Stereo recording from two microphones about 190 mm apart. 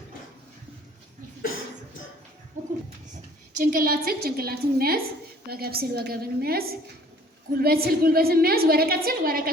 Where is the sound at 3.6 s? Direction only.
50° right (ahead or behind).